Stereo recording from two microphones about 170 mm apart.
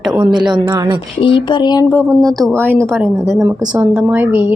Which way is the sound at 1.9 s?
10° left (ahead or behind).